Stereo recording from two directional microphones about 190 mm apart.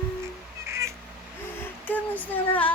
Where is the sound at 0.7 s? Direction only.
15° right (ahead or behind).